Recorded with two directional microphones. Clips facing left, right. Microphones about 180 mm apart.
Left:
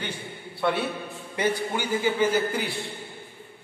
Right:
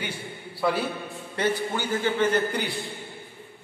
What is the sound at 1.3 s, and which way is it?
A man's voice, 10° left (ahead or behind).